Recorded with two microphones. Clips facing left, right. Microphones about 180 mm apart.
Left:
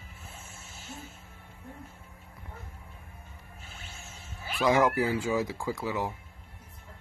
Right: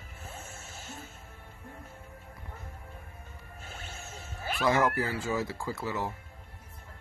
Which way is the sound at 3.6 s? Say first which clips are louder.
Right 5 dB; 40° right (ahead or behind).